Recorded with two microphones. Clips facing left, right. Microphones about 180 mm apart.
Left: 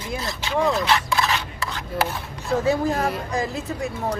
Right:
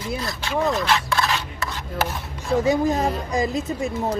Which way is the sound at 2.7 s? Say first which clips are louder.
Right 1 dB; 15° right (ahead or behind).